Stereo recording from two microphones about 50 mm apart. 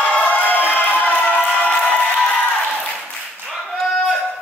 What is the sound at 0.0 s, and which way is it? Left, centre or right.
Music, left.